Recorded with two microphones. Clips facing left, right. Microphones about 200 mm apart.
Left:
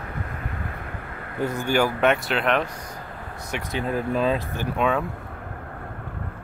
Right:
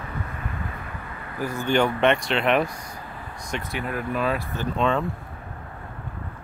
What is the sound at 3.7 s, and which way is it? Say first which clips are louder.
Speech: left 4 dB; 25° left (ahead or behind).